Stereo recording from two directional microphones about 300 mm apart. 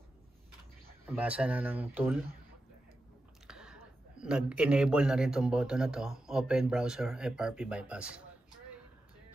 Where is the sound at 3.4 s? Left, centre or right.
Centre.